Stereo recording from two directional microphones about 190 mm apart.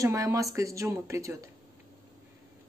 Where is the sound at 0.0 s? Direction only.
15° right (ahead or behind).